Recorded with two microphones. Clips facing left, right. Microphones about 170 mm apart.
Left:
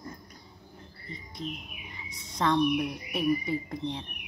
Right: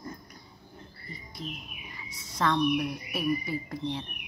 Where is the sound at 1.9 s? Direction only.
20° left (ahead or behind).